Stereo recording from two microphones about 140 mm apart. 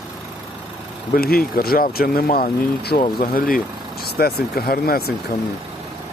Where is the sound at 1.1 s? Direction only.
90° left.